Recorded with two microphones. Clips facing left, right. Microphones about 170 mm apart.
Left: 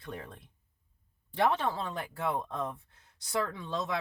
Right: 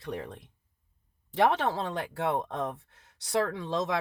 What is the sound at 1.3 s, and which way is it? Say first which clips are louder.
Speech: right 3 dB; 75° right (ahead or behind).